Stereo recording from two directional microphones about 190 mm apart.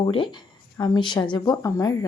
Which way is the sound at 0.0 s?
25° left (ahead or behind).